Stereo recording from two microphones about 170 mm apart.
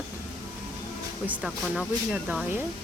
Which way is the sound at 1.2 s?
5° right (ahead or behind).